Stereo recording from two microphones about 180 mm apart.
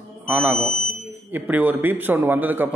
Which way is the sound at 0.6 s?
5° left (ahead or behind).